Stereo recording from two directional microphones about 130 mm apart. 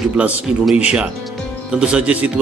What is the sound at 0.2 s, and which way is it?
A man's voice, 10° right (ahead or behind).